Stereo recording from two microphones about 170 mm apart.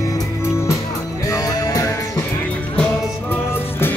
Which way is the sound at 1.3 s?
20° left (ahead or behind).